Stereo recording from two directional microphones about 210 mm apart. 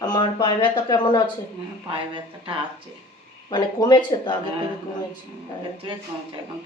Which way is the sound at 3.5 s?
20° left (ahead or behind).